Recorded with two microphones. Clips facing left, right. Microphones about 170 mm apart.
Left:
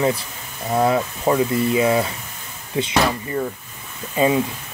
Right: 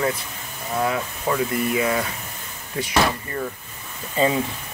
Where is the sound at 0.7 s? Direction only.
30° left (ahead or behind).